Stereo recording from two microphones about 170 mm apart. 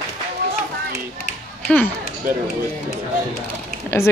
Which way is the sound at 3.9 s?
15° left (ahead or behind).